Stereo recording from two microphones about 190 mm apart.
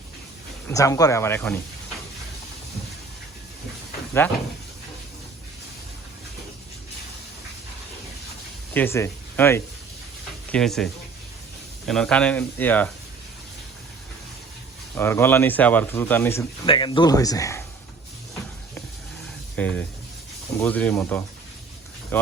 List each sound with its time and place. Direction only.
0.7 s speech: 15° left (ahead or behind)
4.2 s speech: 10° left (ahead or behind)
8.7 s speech: 10° left (ahead or behind)
11.9 s speech: 5° left (ahead or behind)
14.9 s speech: 10° left (ahead or behind)
16.6 s speech: 25° left (ahead or behind)
19.5 s speech: 5° left (ahead or behind)